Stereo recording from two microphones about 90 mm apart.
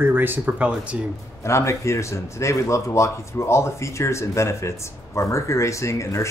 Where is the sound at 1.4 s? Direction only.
30° left (ahead or behind).